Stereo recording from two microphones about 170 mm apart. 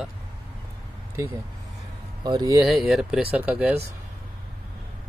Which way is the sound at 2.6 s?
Centre (ahead or behind).